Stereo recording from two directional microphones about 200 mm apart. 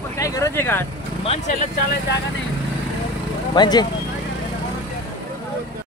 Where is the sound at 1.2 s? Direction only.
30° left (ahead or behind).